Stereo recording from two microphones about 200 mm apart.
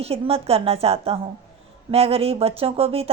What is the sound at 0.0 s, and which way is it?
A woman's voice, 30° right (ahead or behind).